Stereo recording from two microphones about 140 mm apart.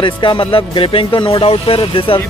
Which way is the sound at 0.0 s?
35° left (ahead or behind).